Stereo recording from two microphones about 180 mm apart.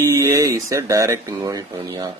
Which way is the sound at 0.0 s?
15° right (ahead or behind).